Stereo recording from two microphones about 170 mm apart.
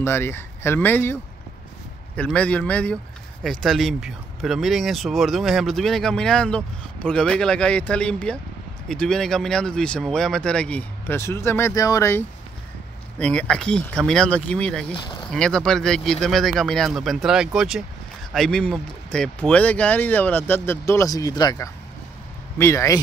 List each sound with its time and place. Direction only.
0.0 s a man's voice: 15° left (ahead or behind)
2.1 s a man's voice: 5° left (ahead or behind)
14.9 s speech: 30° left (ahead or behind)
15.3 s a man's voice: 5° left (ahead or behind)